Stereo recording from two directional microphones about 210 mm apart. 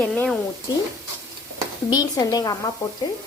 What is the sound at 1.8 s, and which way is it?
Speech, 20° left (ahead or behind).